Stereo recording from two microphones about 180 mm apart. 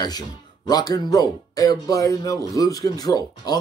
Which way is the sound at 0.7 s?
20° left (ahead or behind).